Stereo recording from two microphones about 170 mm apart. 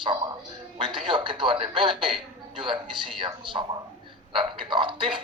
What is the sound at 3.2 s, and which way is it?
Speech, 30° right (ahead or behind).